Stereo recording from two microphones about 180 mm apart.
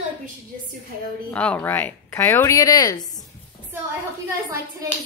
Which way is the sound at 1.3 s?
5° left (ahead or behind).